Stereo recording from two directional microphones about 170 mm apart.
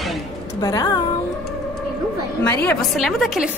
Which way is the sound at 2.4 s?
10° left (ahead or behind).